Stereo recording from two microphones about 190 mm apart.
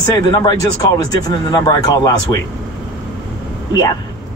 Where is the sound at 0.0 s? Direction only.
20° left (ahead or behind).